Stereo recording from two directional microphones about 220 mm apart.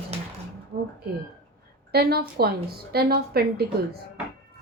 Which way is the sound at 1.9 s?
45° right (ahead or behind).